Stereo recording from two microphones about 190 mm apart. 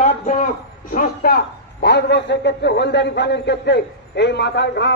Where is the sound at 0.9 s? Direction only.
55° left (ahead or behind).